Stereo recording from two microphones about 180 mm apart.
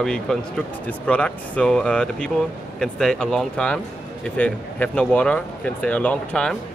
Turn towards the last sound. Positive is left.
turn(degrees=5)  # may be behind; listen again after turning